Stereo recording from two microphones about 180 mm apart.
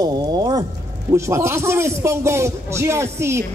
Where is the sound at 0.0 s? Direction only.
20° right (ahead or behind).